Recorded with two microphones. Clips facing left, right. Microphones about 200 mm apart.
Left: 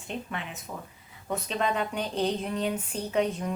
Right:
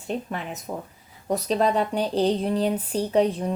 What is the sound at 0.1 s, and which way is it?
Speech, 40° right (ahead or behind).